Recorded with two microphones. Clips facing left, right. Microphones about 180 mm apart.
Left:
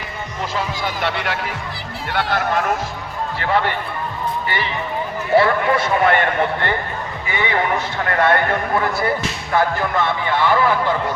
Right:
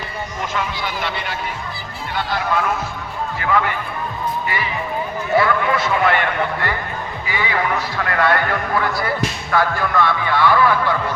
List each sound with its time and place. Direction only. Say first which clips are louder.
0.5 s a man's voice: left 2 dB; 40° left (ahead or behind)
1.0 s speech: left 3 dB; 70° left (ahead or behind)
2.1 s speech: left 1 dB; 50° left (ahead or behind)
3.4 s a man's voice: even; 35° left (ahead or behind)
5.3 s a man's voice: left 2 dB; 30° left (ahead or behind)